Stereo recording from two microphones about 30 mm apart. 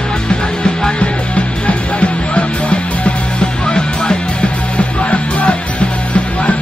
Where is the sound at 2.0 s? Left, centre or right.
Left.